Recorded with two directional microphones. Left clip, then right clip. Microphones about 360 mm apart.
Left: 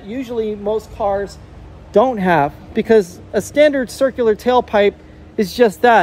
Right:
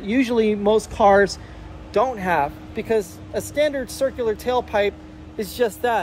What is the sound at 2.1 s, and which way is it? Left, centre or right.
Speech, left.